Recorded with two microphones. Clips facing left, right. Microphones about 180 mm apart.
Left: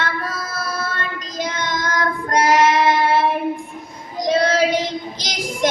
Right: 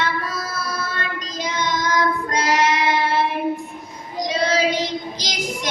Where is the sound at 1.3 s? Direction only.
50° left (ahead or behind).